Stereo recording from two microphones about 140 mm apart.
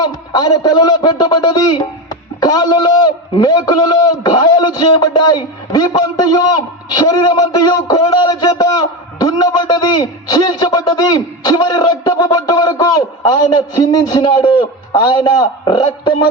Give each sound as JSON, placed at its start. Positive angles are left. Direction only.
{"t": 0.0, "sound": "a man's voice", "side_deg": 30}